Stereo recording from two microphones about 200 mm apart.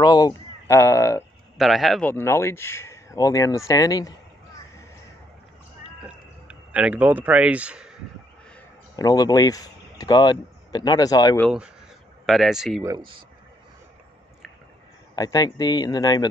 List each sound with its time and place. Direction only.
0.0 s speech: 20° left (ahead or behind)
1.6 s speech: centre (ahead or behind); by 4.1 s 15° left (ahead or behind)
6.0 s a man's voice: 5° right (ahead or behind)
8.9 s speech: 20° left (ahead or behind)
11.4 s speech: 5° right (ahead or behind)
12.8 s speech: 20° right (ahead or behind)
15.1 s speech: 20° left (ahead or behind)